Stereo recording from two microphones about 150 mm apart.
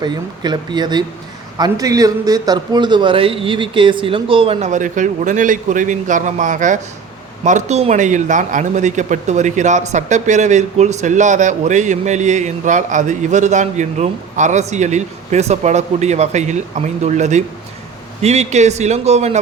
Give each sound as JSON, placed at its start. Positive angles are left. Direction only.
{"t": 0.0, "sound": "a man's voice", "side_deg": -30}
{"t": 4.6, "sound": "a man's voice", "side_deg": -55}